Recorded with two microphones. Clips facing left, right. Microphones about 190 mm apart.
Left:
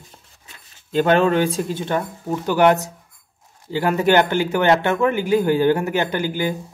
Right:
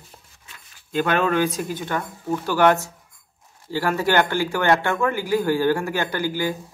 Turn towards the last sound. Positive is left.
turn(degrees=20)  # may be behind; listen again after turning